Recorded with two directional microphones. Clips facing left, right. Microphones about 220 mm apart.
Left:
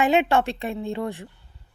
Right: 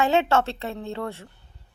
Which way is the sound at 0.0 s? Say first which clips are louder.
Left 1 dB; 15° left (ahead or behind).